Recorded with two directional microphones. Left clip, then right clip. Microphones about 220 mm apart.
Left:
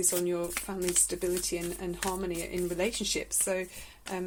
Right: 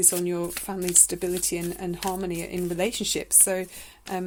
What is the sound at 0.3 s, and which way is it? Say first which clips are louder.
Speech: right 3 dB; 45° right (ahead or behind).